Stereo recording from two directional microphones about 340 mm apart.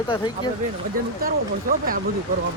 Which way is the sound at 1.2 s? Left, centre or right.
Right.